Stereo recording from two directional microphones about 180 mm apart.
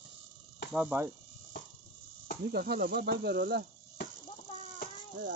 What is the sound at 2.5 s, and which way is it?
Speech, 60° right (ahead or behind).